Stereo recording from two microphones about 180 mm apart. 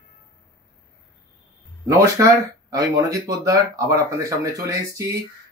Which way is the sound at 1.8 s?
20° right (ahead or behind).